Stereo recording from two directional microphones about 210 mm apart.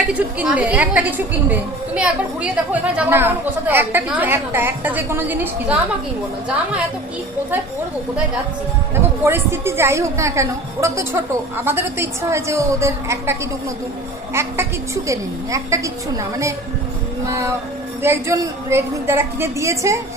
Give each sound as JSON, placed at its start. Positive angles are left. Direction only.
{"t": 0.1, "sound": "a woman's voice", "side_deg": -5}
{"t": 9.2, "sound": "a woman's voice", "side_deg": -10}
{"t": 14.3, "sound": "a woman's voice", "side_deg": -10}
{"t": 17.2, "sound": "a woman's voice", "side_deg": -15}